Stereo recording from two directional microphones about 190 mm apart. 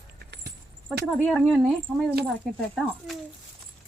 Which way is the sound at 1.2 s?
5° left (ahead or behind).